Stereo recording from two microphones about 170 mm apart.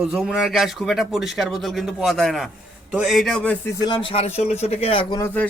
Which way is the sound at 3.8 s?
30° left (ahead or behind).